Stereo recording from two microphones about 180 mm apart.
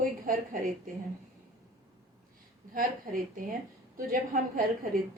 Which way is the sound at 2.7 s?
50° right (ahead or behind).